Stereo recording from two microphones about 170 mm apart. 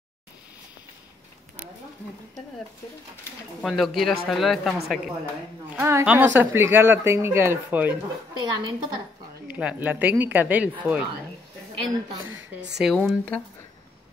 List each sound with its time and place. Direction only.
3.6 s speech: centre (ahead or behind)
5.8 s speech: 15° right (ahead or behind)
8.4 s a woman's voice: 25° right (ahead or behind)
9.5 s speech: 10° right (ahead or behind)
12.7 s speech: centre (ahead or behind)